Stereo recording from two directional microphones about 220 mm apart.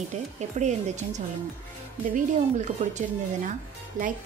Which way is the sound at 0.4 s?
30° right (ahead or behind).